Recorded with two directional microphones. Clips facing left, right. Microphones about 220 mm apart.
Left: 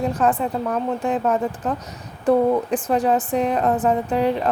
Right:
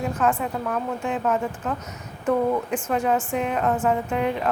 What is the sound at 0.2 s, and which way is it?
Speech, 35° left (ahead or behind).